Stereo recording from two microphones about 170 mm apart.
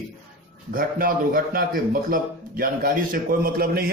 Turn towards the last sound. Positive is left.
turn(degrees=-65)  # may be behind; listen again after turning